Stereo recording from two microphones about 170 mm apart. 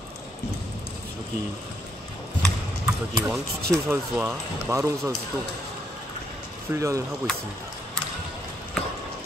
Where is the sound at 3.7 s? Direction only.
15° right (ahead or behind).